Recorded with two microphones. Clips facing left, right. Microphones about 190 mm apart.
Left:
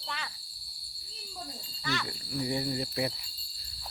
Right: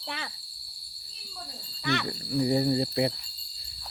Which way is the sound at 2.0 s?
35° right (ahead or behind).